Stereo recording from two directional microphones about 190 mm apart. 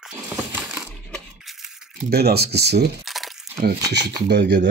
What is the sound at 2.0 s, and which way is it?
Speech, 55° right (ahead or behind).